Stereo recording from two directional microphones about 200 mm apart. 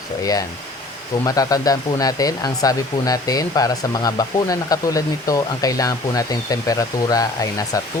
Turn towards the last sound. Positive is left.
turn(degrees=20)  # may be behind; listen again after turning